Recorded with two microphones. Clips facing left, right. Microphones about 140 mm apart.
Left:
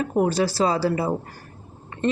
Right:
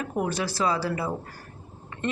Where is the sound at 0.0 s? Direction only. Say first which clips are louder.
Left 7 dB; 30° left (ahead or behind).